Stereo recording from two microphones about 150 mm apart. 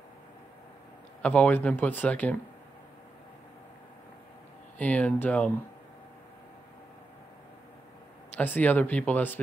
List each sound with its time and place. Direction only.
1.2 s speech: 10° left (ahead or behind)
4.7 s speech: 10° left (ahead or behind)
8.4 s speech: 10° left (ahead or behind)